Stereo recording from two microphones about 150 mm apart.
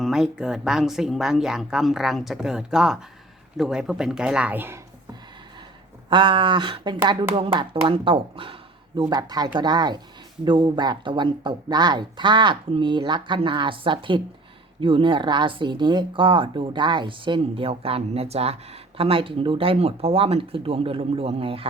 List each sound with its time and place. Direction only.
0.0 s speech: 5° right (ahead or behind)
6.1 s speech: 30° right (ahead or behind)